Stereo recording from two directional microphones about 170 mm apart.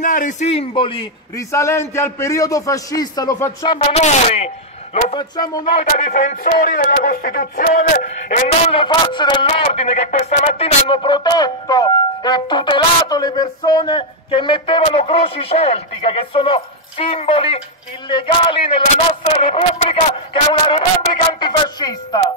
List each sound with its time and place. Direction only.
0.0 s speech: 50° left (ahead or behind); by 1.0 s 30° left (ahead or behind)
1.3 s a man's voice: 15° left (ahead or behind)
3.9 s speech: 40° left (ahead or behind)
5.1 s a man's voice: 25° left (ahead or behind)
5.7 s speech: 40° left (ahead or behind)
8.7 s a man's voice: 25° left (ahead or behind)